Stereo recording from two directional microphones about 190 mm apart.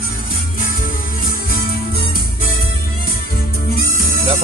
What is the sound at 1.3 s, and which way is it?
Music, 50° left (ahead or behind).